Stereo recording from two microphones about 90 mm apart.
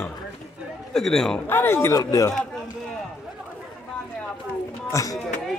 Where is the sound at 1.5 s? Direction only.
25° left (ahead or behind).